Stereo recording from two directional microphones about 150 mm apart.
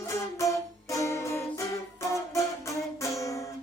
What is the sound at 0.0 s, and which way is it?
Music, 20° left (ahead or behind).